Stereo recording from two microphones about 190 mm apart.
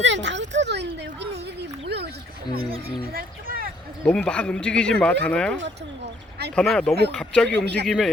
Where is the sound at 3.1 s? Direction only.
50° right (ahead or behind).